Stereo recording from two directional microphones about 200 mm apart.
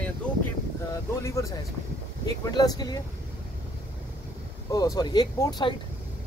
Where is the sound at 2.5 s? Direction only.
20° left (ahead or behind).